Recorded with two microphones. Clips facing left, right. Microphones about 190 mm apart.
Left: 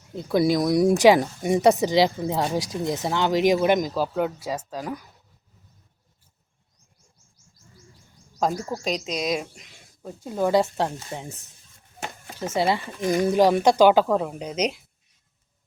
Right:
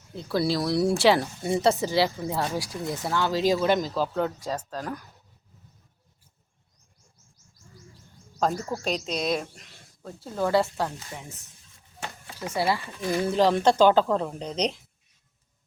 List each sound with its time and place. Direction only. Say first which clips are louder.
0.2 s speech: left 5 dB; 15° left (ahead or behind)
8.4 s speech: left 1 dB; 10° left (ahead or behind); by 11.3 s 30° left (ahead or behind)
12.4 s speech: left 3 dB; 20° left (ahead or behind); by 14.8 s 5° left (ahead or behind)